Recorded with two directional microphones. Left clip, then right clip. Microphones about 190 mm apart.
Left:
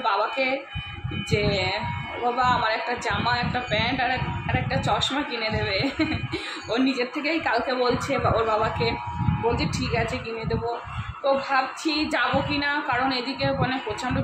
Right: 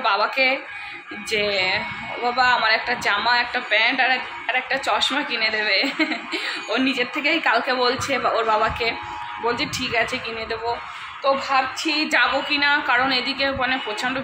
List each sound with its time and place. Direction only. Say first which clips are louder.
0.0 s speech: right 4 dB; centre (ahead or behind)